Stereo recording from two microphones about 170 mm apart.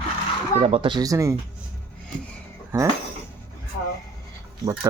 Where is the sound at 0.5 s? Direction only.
35° right (ahead or behind); by 1.3 s 20° right (ahead or behind).